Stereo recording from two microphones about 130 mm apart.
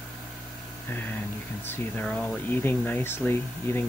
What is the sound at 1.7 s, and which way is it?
Speech, 10° left (ahead or behind).